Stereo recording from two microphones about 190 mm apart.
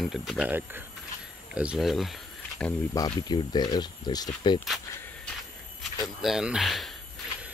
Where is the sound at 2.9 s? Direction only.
20° left (ahead or behind).